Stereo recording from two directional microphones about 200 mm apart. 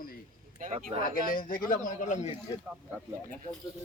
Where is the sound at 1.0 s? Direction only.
45° left (ahead or behind).